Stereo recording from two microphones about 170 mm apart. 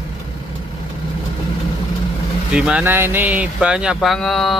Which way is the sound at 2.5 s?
5° right (ahead or behind).